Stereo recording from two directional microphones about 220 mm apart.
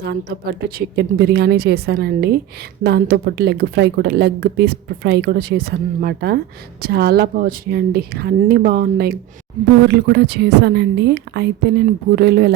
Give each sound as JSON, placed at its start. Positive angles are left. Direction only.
{"t": 0.0, "sound": "a woman's voice", "side_deg": -45}